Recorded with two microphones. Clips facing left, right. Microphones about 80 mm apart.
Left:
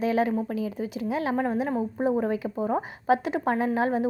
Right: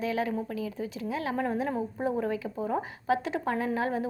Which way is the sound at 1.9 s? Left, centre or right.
Left.